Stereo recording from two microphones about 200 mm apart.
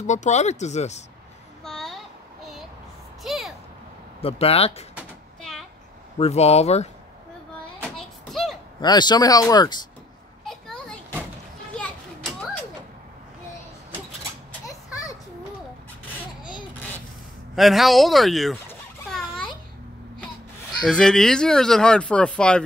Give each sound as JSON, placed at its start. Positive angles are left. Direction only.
{"t": 0.0, "sound": "speech", "side_deg": 35}
{"t": 1.6, "sound": "child singing", "side_deg": 0}
{"t": 3.3, "sound": "a sound", "side_deg": 0}
{"t": 4.2, "sound": "speech", "side_deg": 30}
{"t": 4.9, "sound": "a sound", "side_deg": 0}
{"t": 6.1, "sound": "speech", "side_deg": 30}
{"t": 7.8, "sound": "child singing", "side_deg": 0}
{"t": 8.8, "sound": "speech", "side_deg": 20}
{"t": 10.4, "sound": "children playing", "side_deg": 0}
{"t": 17.6, "sound": "speech", "side_deg": 0}
{"t": 18.7, "sound": "a sound", "side_deg": 5}
{"t": 20.8, "sound": "speech", "side_deg": 5}